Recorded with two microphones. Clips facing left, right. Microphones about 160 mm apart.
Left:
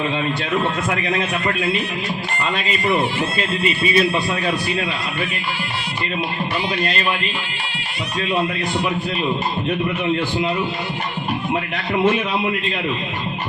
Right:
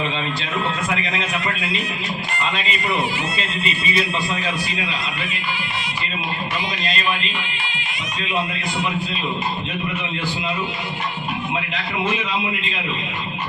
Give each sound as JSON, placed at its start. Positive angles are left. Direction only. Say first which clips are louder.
{"t": 3.3, "sound": "speech", "louder": "left 5 dB", "side_deg": 55}